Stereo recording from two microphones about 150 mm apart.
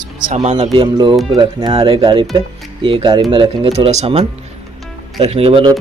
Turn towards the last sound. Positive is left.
turn(degrees=-35)  # may be behind; listen again after turning